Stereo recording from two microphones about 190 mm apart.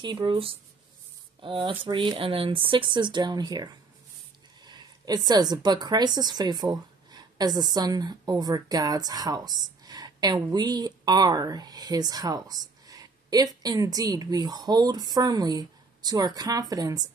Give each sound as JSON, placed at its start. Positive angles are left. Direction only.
{"t": 0.0, "sound": "a woman's voice", "side_deg": -25}